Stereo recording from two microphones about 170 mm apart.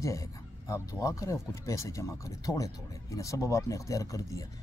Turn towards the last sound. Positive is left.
turn(degrees=20)  # may be behind; listen again after turning